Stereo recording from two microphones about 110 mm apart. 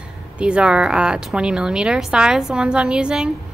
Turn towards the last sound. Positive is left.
turn(degrees=-10)  # may be behind; listen again after turning